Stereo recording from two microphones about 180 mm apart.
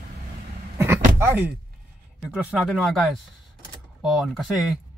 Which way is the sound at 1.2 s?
10° right (ahead or behind).